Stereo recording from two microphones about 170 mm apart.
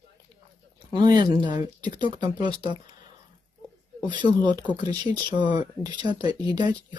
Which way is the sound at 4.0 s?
25° right (ahead or behind).